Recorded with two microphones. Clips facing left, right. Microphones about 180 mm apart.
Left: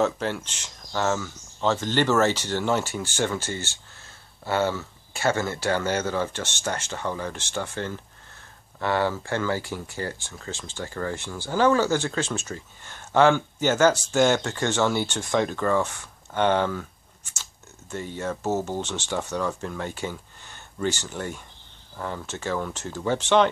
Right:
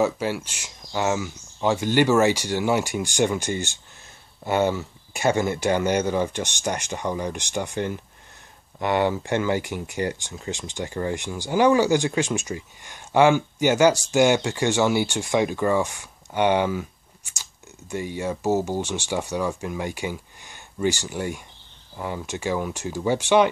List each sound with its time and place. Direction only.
0.0 s speech: 10° right (ahead or behind)